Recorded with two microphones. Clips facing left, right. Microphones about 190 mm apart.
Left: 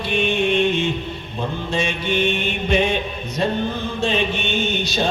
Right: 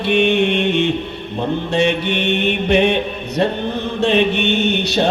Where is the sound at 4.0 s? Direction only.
65° right (ahead or behind).